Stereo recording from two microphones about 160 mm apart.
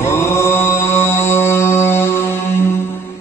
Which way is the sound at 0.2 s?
15° left (ahead or behind).